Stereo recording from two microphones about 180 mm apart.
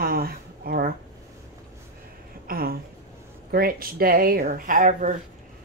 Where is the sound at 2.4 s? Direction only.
55° right (ahead or behind).